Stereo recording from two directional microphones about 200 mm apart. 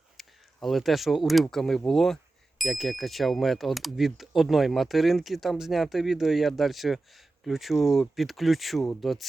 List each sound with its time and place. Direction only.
0.2 s speech: centre (ahead or behind)